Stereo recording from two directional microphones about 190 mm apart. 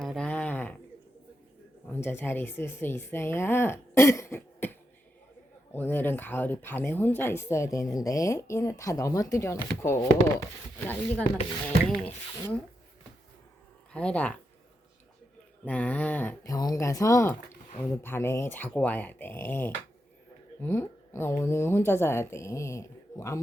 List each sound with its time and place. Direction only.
0.0 s a sound: 5° left (ahead or behind)
1.9 s speech: 10° left (ahead or behind)
13.9 s speech: 5° left (ahead or behind)
15.6 s speech: 5° left (ahead or behind)